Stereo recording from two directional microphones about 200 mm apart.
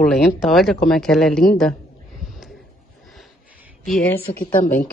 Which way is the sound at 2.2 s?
Centre (ahead or behind).